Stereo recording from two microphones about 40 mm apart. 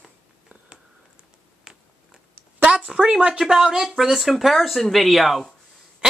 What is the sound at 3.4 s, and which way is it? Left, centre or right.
Speech, centre.